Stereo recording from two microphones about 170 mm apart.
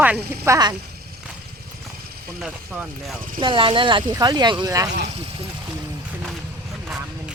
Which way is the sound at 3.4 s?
30° right (ahead or behind).